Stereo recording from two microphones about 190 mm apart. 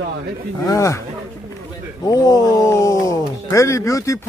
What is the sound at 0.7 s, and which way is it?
Speech, 15° left (ahead or behind).